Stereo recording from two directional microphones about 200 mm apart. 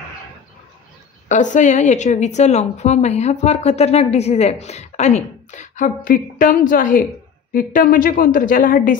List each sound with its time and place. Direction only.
1.3 s a woman's voice: 40° left (ahead or behind)